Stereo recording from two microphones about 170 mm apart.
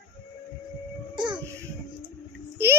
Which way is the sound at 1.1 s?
25° right (ahead or behind).